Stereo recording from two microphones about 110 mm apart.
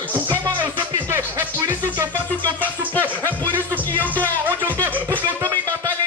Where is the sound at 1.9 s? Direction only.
40° right (ahead or behind).